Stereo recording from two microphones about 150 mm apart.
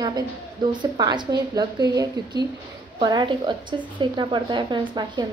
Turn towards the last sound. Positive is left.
turn(degrees=-30)  # may be behind; listen again after turning